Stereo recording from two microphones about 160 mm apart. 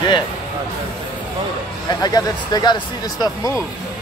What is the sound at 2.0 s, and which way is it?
Speech, 25° left (ahead or behind).